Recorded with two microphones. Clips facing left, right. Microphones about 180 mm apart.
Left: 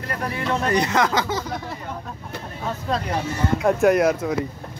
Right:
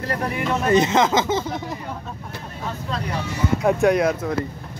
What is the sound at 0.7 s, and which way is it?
Speech, 20° right (ahead or behind).